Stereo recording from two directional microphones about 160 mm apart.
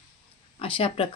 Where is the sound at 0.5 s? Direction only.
35° left (ahead or behind).